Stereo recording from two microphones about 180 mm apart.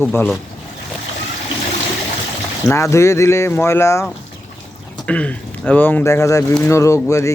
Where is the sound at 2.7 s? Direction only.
15° left (ahead or behind).